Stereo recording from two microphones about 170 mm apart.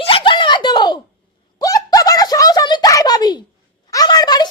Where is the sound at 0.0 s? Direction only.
30° left (ahead or behind).